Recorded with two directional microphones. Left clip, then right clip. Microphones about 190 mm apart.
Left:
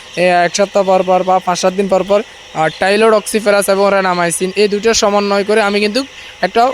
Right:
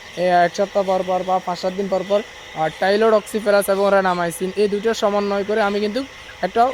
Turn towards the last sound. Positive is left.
turn(degrees=20)  # may be behind; listen again after turning